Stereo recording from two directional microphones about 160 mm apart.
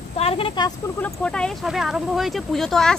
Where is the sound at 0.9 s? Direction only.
10° left (ahead or behind).